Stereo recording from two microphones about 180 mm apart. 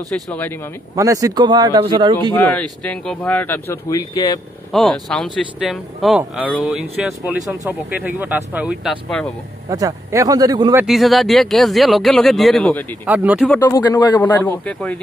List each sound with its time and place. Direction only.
0.1 s speech: 5° left (ahead or behind)
0.9 s a man's voice: 20° right (ahead or behind)
2.5 s speech: 5° left (ahead or behind); by 4.4 s 20° left (ahead or behind)
4.7 s speech: centre (ahead or behind)
9.7 s a man's voice: 20° right (ahead or behind)
10.8 s speech: centre (ahead or behind)
13.0 s speech: 10° right (ahead or behind)
13.6 s speech: 20° left (ahead or behind)
14.2 s speech: 10° left (ahead or behind)